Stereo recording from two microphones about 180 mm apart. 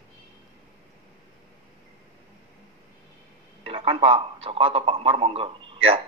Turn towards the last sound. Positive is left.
turn(degrees=-30)  # may be behind; listen again after turning